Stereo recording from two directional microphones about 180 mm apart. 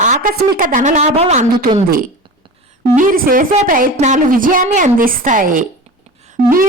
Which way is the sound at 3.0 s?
50° right (ahead or behind).